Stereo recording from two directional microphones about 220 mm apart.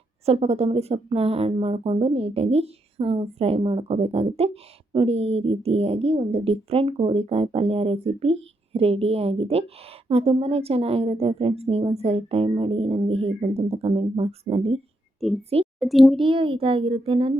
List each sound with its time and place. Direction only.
0.3 s speech: 30° right (ahead or behind)
15.2 s a child's voice: centre (ahead or behind)
16.2 s speech: 25° right (ahead or behind)